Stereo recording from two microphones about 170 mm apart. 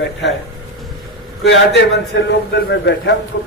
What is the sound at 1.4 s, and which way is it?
A man's voice, 90° left.